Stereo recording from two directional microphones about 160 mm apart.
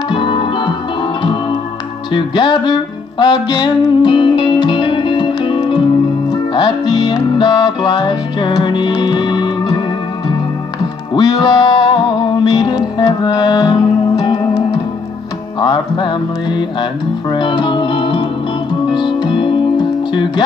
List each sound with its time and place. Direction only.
0.1 s music: 30° left (ahead or behind)
11.1 s music: 25° left (ahead or behind)